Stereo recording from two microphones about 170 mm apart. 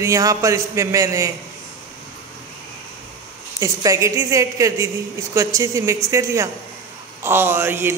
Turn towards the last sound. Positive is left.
turn(degrees=-15)  # may be behind; listen again after turning